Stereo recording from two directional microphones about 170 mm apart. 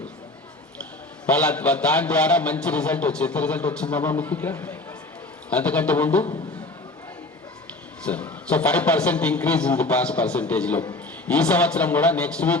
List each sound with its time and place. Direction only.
1.4 s a man's voice: 10° left (ahead or behind)
8.0 s a man's voice: 10° left (ahead or behind)